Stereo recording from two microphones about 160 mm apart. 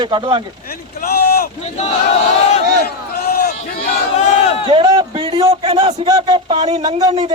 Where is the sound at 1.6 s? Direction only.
45° left (ahead or behind).